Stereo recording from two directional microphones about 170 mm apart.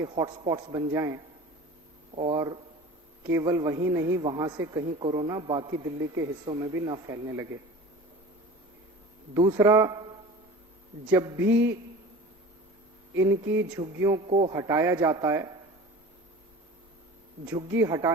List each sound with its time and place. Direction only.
0.1 s a man's voice: 25° right (ahead or behind)
2.3 s a man's voice: 25° right (ahead or behind)
3.3 s a sound: 20° right (ahead or behind)
4.2 s a man's voice: 25° right (ahead or behind)
9.3 s a man's voice: 25° right (ahead or behind)
11.1 s a man's voice: 25° right (ahead or behind)
11.3 s a sound: 10° right (ahead or behind)
13.1 s a sound: 15° right (ahead or behind)
14.3 s a man's voice: 35° right (ahead or behind)
14.5 s a man's voice: 20° right (ahead or behind)
17.5 s a man's voice: 20° right (ahead or behind)